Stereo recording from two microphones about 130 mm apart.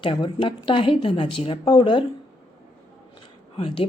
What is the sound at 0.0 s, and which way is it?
A woman's voice, 40° left (ahead or behind).